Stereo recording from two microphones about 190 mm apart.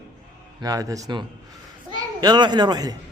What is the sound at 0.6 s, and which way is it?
Speech, 20° right (ahead or behind).